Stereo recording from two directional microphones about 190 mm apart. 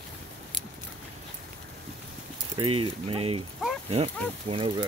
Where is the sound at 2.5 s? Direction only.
30° right (ahead or behind).